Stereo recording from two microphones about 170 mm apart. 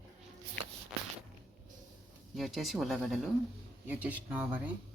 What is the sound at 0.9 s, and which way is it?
Walk, 5° right (ahead or behind).